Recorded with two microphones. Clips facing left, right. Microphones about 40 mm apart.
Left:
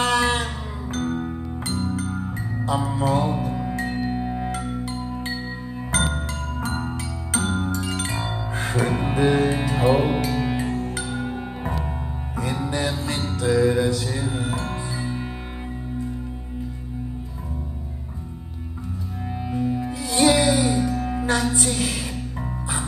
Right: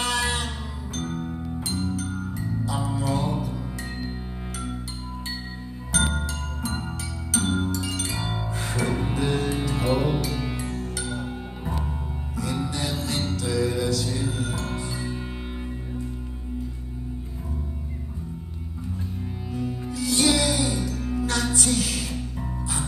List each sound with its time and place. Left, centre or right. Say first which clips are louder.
0.0 s music: left 5 dB; left
2.6 s music: left 6 dB; left
5.9 s music: left 1 dB; left
19.5 s music: left 5 dB; centre